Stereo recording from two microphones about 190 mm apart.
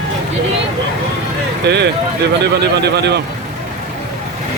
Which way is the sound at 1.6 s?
60° right (ahead or behind).